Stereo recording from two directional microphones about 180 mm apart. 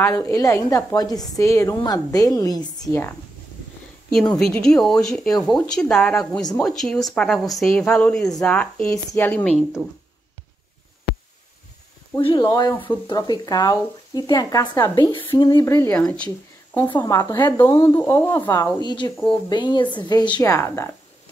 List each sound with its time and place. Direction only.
0.0 s speech: 15° left (ahead or behind)
4.1 s speech: 5° left (ahead or behind)
12.2 s speech: 25° left (ahead or behind); by 16.3 s 5° left (ahead or behind)
16.8 s speech: 25° left (ahead or behind)